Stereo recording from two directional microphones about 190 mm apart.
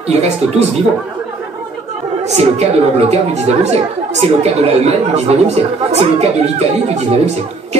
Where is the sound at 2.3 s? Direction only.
35° right (ahead or behind).